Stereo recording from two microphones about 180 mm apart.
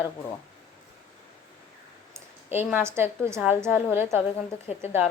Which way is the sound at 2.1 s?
10° right (ahead or behind).